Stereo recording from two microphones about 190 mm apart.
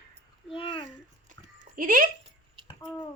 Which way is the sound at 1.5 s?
45° right (ahead or behind).